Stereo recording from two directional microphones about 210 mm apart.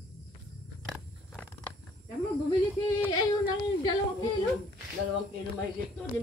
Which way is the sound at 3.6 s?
20° left (ahead or behind).